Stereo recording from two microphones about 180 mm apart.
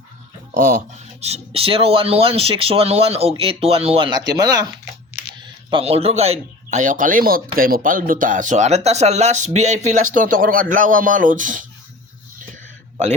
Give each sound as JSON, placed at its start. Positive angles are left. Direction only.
{"t": 0.5, "sound": "speech", "side_deg": -45}
{"t": 5.7, "sound": "speech", "side_deg": -35}